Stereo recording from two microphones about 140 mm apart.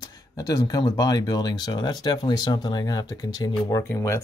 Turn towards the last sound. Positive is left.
turn(degrees=20)  # may be behind; listen again after turning